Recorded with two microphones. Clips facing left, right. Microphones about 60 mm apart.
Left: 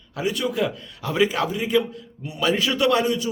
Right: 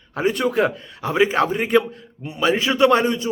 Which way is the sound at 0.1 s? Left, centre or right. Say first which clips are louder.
Right 4 dB; right.